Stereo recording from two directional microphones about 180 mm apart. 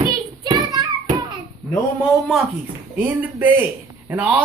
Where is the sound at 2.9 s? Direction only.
10° right (ahead or behind).